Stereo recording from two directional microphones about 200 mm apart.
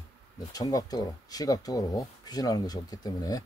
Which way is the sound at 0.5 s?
20° left (ahead or behind).